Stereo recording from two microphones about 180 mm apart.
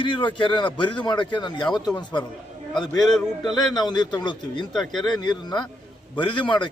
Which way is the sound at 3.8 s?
25° left (ahead or behind).